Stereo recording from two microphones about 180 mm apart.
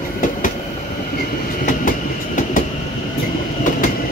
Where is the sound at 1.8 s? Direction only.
50° left (ahead or behind).